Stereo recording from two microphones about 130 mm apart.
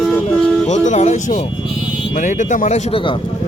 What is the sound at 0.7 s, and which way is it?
Speech, 60° left (ahead or behind).